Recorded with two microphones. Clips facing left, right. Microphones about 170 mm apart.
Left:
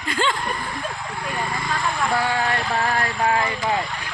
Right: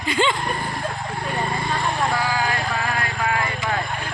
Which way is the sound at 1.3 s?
30° right (ahead or behind).